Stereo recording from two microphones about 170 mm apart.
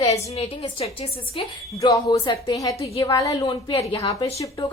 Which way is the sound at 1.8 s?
20° left (ahead or behind).